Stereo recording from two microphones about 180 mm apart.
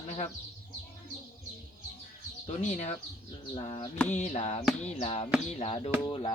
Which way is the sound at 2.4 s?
35° left (ahead or behind).